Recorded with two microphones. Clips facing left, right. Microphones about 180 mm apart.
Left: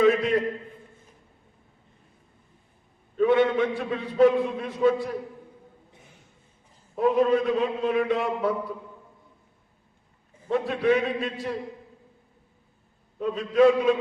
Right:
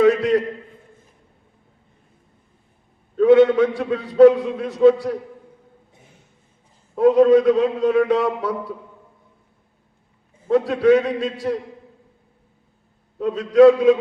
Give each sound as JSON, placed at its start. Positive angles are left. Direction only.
{"t": 0.0, "sound": "a sound", "side_deg": -75}
{"t": 3.2, "sound": "a man's voice", "side_deg": -75}
{"t": 6.9, "sound": "a man's voice", "side_deg": -85}
{"t": 10.5, "sound": "a man's voice", "side_deg": -75}
{"t": 13.1, "sound": "a man's voice", "side_deg": -80}